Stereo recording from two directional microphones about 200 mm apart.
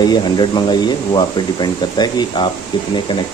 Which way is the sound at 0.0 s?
20° left (ahead or behind).